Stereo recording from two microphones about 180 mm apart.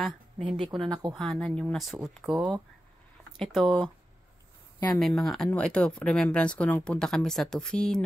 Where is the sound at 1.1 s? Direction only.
5° left (ahead or behind).